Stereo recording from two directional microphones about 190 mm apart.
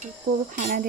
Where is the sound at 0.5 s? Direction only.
40° right (ahead or behind).